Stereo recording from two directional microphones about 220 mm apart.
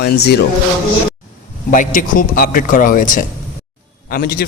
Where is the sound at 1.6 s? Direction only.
35° left (ahead or behind).